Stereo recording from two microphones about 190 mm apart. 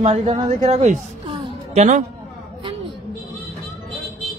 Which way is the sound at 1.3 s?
25° right (ahead or behind).